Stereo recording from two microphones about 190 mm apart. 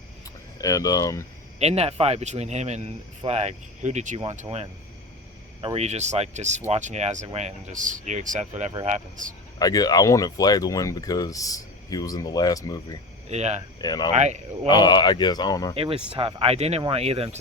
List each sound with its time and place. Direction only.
0.6 s speech: 20° left (ahead or behind)
1.5 s speech: 35° right (ahead or behind)
9.6 s speech: 20° left (ahead or behind)
13.3 s speech: 35° right (ahead or behind)
13.7 s speech: 20° left (ahead or behind)
14.2 s speech: 35° right (ahead or behind)
14.7 s speech: 20° left (ahead or behind)
15.7 s speech: 30° right (ahead or behind)